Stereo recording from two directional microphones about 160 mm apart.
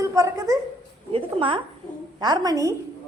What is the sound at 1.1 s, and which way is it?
A woman's voice, 35° right (ahead or behind).